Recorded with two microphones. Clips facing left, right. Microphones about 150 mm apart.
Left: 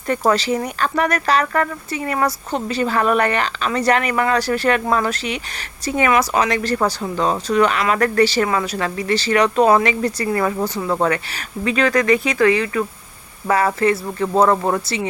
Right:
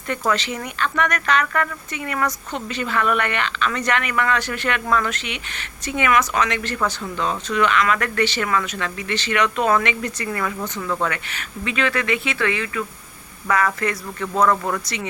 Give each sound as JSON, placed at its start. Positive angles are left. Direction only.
{"t": 0.1, "sound": "speech", "side_deg": 35}